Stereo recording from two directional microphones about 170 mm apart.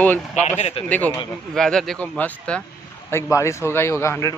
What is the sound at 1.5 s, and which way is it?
A man's voice, 5° left (ahead or behind).